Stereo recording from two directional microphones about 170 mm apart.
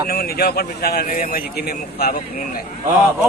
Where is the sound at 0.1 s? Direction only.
65° left (ahead or behind).